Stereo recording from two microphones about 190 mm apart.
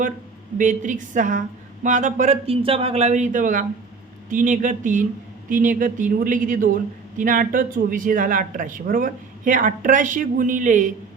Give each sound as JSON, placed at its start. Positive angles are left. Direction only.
{"t": 0.6, "sound": "a woman's voice", "side_deg": -45}